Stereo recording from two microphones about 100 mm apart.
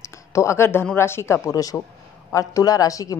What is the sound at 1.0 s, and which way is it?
A woman's voice, 25° left (ahead or behind).